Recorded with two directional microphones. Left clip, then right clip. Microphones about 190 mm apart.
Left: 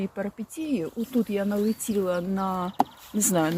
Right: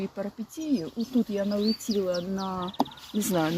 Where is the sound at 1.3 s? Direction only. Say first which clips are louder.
Left 1 dB; 15° left (ahead or behind).